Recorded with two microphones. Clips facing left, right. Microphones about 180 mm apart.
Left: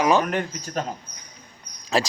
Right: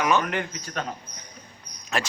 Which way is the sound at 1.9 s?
30° left (ahead or behind).